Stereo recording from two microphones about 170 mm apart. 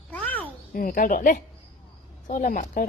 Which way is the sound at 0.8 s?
55° left (ahead or behind).